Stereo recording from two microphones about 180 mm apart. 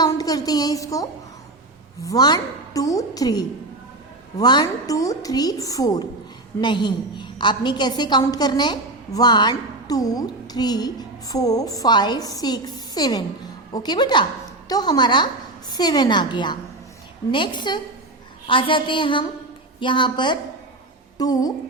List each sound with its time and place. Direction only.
0.0 s a woman's voice: 20° left (ahead or behind)